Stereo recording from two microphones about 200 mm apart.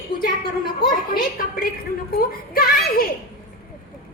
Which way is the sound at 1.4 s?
45° left (ahead or behind).